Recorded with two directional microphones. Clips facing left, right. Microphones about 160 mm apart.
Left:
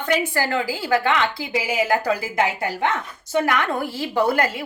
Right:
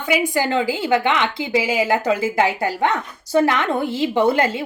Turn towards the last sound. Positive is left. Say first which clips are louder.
# right 3 dB
turn(degrees=-25)  # may be behind; listen again after turning